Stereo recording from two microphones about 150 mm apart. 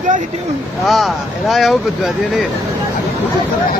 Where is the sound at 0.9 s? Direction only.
Centre (ahead or behind).